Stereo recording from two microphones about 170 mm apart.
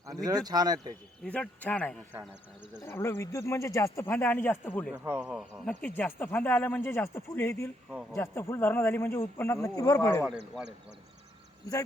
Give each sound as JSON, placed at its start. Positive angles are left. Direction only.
{"t": 0.0, "sound": "speech", "side_deg": -20}
{"t": 1.2, "sound": "speech", "side_deg": 5}
{"t": 4.9, "sound": "speech", "side_deg": -10}